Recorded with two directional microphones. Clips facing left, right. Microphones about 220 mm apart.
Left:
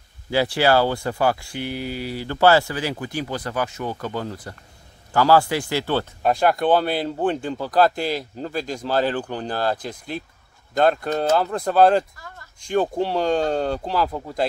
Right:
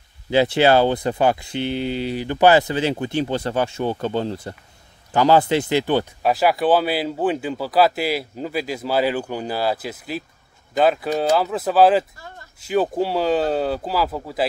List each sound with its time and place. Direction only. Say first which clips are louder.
0.3 s speech: right 3 dB; 20° right (ahead or behind)
6.2 s speech: left 1 dB; 5° right (ahead or behind)